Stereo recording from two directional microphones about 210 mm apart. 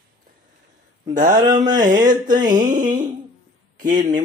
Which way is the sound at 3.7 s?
40° right (ahead or behind).